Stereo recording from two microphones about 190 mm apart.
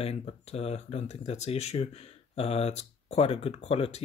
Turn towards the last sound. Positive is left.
turn(degrees=30)  # may be behind; listen again after turning